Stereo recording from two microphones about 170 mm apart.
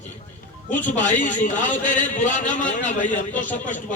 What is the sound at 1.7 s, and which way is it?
Speech, 50° left (ahead or behind).